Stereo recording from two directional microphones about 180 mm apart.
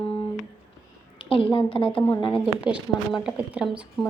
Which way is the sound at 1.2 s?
30° left (ahead or behind).